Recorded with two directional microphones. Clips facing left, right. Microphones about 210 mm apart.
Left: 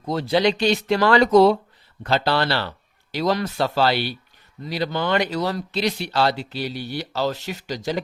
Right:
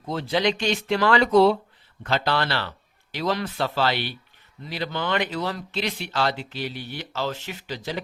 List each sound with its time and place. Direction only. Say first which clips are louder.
0.0 s speech: left 4 dB; 40° left (ahead or behind)